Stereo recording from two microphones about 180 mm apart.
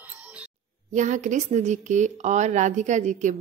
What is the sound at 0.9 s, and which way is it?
Speech, 45° right (ahead or behind).